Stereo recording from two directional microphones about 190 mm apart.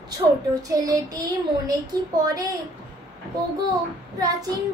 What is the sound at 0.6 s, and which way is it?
A child's voice, 20° right (ahead or behind).